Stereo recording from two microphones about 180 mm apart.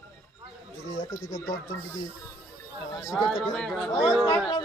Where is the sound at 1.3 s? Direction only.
20° left (ahead or behind).